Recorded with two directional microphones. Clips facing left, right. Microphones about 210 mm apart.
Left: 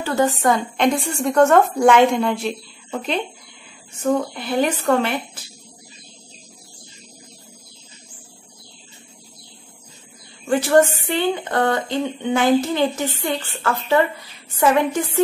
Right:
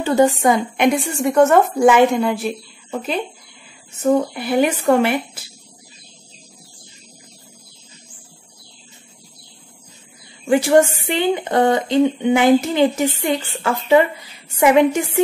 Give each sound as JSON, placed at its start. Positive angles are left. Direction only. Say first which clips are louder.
{"t": 0.0, "sound": "a woman's voice", "louder": "right 4 dB", "side_deg": -15}
{"t": 10.4, "sound": "a woman's voice", "louder": "right 2 dB", "side_deg": -15}